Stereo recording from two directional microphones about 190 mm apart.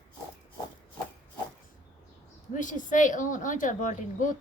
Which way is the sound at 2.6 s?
40° left (ahead or behind).